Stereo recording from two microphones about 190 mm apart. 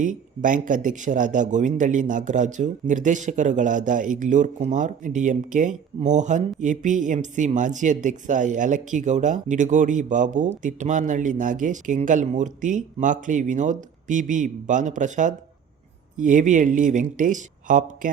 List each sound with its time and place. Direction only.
0.0 s a man's voice: 45° right (ahead or behind)